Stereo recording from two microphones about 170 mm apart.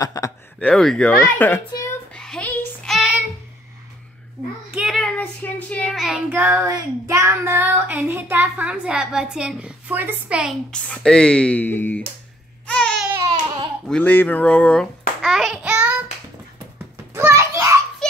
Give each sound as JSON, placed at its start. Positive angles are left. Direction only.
{"t": 0.0, "sound": "speech", "side_deg": 20}
{"t": 0.6, "sound": "speech", "side_deg": 5}
{"t": 1.2, "sound": "speech", "side_deg": 15}
{"t": 2.1, "sound": "child singing", "side_deg": 5}
{"t": 4.7, "sound": "child singing", "side_deg": 0}
{"t": 10.7, "sound": "speech", "side_deg": 5}
{"t": 12.6, "sound": "baby cry", "side_deg": 5}
{"t": 13.8, "sound": "babbling", "side_deg": 5}
{"t": 16.5, "sound": "a sound", "side_deg": -15}